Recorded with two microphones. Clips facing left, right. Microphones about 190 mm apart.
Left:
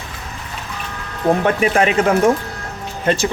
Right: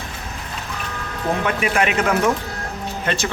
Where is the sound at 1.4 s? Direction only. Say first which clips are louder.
Left 5 dB; 35° left (ahead or behind).